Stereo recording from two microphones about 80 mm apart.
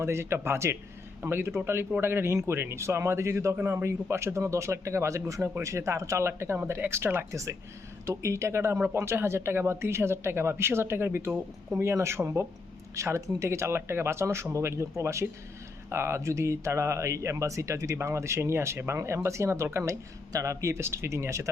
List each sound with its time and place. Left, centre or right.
0.0 s speech: right